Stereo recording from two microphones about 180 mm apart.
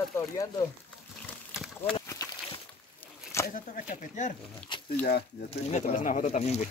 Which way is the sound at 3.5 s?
50° left (ahead or behind).